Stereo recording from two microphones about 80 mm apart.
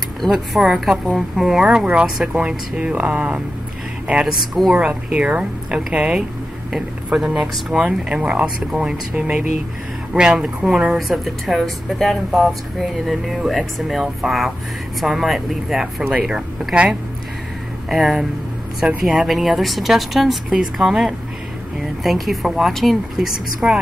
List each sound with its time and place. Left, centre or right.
0.2 s speech: centre
4.7 s speech: centre